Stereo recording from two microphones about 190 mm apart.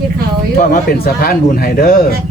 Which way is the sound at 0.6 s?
50° left (ahead or behind).